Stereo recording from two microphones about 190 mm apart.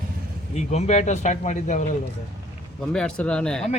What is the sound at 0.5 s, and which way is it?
Speech, 35° left (ahead or behind).